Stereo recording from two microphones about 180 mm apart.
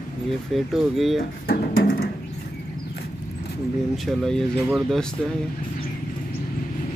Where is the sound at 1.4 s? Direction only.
60° left (ahead or behind).